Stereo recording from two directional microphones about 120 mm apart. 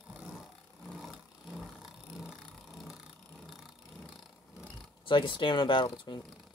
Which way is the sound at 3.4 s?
Centre (ahead or behind).